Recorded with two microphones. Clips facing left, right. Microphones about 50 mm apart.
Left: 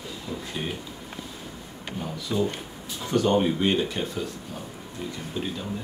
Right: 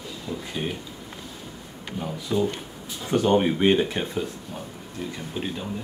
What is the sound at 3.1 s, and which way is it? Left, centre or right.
Speech, right.